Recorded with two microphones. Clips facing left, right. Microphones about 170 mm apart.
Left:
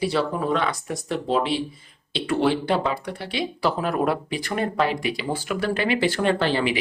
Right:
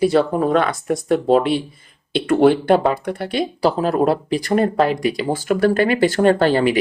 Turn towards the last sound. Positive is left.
turn(degrees=-45)  # may be behind; listen again after turning